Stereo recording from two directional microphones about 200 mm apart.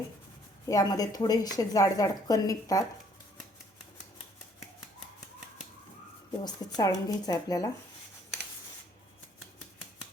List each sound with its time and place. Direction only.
0.7 s speech: 20° left (ahead or behind)
6.4 s speech: 20° left (ahead or behind)